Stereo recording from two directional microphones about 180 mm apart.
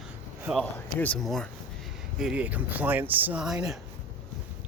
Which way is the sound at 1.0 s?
5° left (ahead or behind).